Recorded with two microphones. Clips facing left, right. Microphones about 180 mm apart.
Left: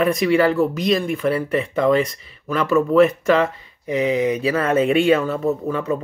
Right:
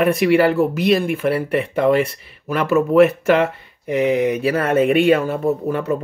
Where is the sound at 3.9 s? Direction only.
60° right (ahead or behind).